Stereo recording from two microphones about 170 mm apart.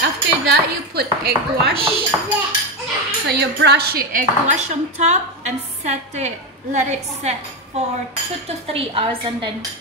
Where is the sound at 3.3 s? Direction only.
75° right (ahead or behind); by 7.3 s 45° right (ahead or behind).